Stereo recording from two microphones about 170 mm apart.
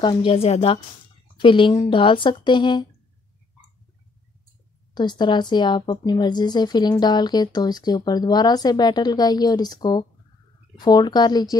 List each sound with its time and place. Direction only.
0.0 s a woman's voice: 30° left (ahead or behind)
4.9 s a woman's voice: 25° left (ahead or behind)